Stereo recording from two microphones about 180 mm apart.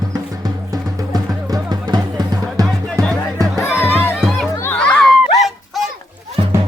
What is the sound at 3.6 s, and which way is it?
Music, 10° left (ahead or behind).